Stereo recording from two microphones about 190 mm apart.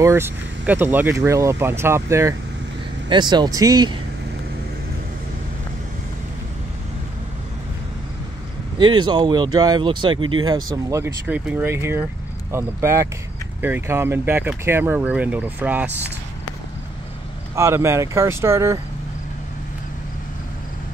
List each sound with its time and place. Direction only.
0.0 s speech: 15° right (ahead or behind)
8.7 s speech: 25° right (ahead or behind); by 16.1 s 10° right (ahead or behind)
17.6 s speech: 15° right (ahead or behind)